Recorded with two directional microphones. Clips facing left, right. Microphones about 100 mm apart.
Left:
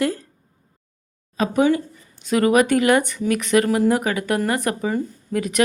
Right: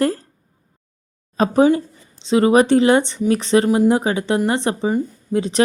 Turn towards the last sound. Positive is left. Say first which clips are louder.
# right 3 dB
turn(degrees=-25)  # may be behind; listen again after turning